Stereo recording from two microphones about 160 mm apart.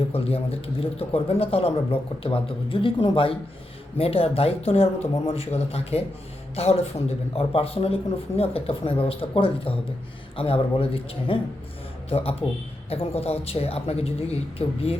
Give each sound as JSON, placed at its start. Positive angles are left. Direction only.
{"t": 0.1, "sound": "a man's voice", "side_deg": 40}